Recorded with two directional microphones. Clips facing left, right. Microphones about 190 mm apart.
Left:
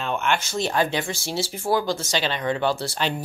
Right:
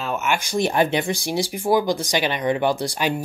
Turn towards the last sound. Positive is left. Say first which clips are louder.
# right 3 dB
turn(degrees=-10)  # may be behind; listen again after turning